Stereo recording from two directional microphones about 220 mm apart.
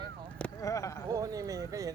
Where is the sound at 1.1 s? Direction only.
15° right (ahead or behind).